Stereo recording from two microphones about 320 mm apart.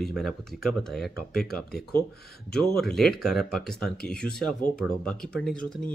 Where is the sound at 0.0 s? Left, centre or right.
Centre.